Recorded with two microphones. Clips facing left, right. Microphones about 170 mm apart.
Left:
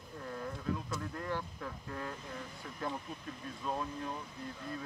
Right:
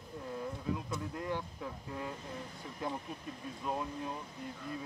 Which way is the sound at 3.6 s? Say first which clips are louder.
Even; 15° right (ahead or behind).